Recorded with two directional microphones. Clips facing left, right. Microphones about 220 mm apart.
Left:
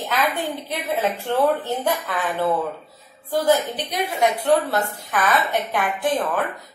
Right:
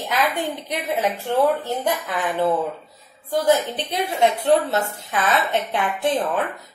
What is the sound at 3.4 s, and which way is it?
A woman's voice, 25° right (ahead or behind).